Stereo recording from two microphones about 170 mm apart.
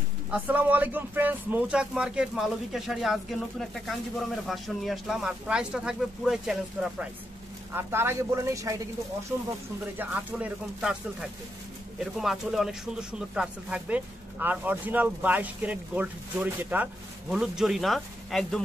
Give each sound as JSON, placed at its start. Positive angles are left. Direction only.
{"t": 0.3, "sound": "speech", "side_deg": -10}
{"t": 9.9, "sound": "speech", "side_deg": -5}